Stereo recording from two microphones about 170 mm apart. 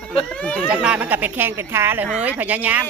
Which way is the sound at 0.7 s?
5° right (ahead or behind).